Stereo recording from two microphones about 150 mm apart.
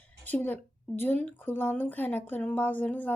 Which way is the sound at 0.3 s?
10° left (ahead or behind).